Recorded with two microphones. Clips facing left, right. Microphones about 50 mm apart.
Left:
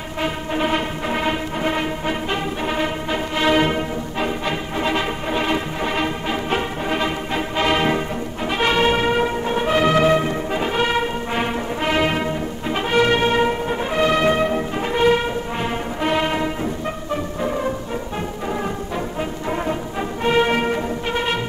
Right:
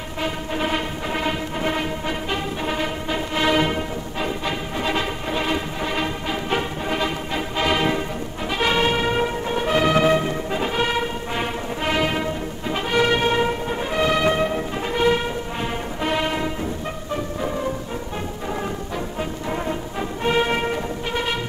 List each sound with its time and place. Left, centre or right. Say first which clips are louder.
0.2 s music: left 3 dB; centre
8.5 s brass instrument: left 2 dB; centre
10.5 s music: left 2 dB; centre
14.0 s brass instrument: left 2 dB; left
19.1 s music: left 1 dB; centre